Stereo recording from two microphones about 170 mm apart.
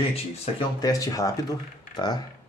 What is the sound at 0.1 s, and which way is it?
Speech, 25° left (ahead or behind).